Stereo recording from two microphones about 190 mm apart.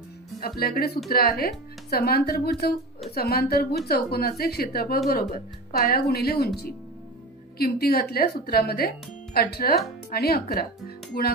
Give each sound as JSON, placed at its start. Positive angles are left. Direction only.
{"t": 0.6, "sound": "speech", "side_deg": 55}